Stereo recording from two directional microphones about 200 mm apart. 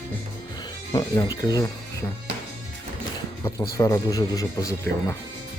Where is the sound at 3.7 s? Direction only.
15° left (ahead or behind).